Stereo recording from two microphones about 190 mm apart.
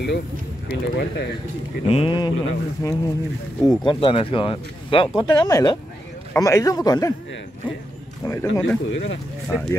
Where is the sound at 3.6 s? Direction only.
25° left (ahead or behind).